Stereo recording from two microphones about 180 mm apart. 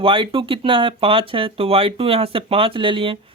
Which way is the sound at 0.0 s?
30° right (ahead or behind).